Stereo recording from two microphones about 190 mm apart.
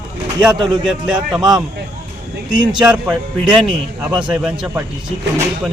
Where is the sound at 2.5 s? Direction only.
25° right (ahead or behind).